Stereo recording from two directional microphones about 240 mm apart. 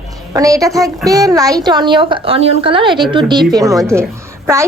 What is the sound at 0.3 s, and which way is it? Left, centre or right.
A woman's voice, centre.